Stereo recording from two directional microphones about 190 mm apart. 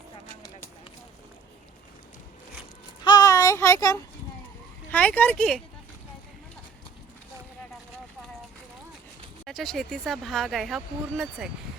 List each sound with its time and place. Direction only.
3.0 s child singing: 20° left (ahead or behind)
4.9 s speech: 10° left (ahead or behind)
9.5 s speech: centre (ahead or behind)